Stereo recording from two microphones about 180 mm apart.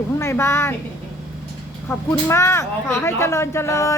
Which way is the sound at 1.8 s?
15° left (ahead or behind).